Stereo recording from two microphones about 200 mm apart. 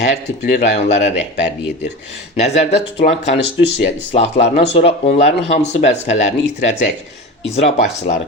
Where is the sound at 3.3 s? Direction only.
60° left (ahead or behind).